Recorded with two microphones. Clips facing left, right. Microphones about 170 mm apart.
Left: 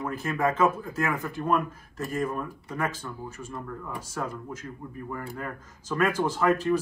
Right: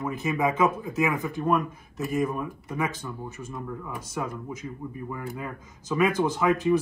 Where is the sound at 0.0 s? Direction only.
Centre (ahead or behind).